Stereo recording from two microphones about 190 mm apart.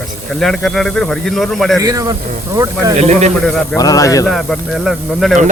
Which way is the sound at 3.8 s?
20° left (ahead or behind).